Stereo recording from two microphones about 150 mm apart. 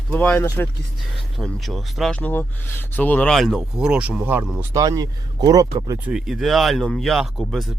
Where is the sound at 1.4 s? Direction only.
Centre (ahead or behind).